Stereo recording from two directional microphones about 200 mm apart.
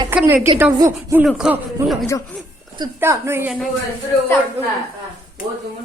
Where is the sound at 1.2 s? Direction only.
5° right (ahead or behind).